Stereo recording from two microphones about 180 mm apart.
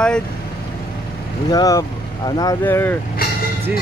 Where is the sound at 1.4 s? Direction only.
20° left (ahead or behind).